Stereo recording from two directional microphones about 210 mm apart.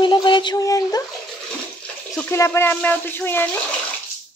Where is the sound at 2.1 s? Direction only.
10° left (ahead or behind).